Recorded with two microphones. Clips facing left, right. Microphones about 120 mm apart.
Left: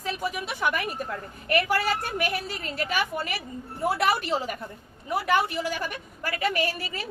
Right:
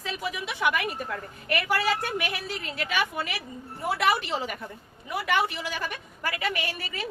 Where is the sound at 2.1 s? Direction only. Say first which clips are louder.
Left 2 dB; 45° left (ahead or behind).